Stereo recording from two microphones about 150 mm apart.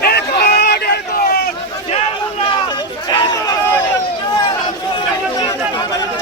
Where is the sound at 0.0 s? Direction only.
90° left.